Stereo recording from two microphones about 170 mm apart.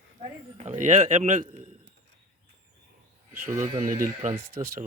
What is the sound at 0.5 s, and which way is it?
Speech, 45° right (ahead or behind).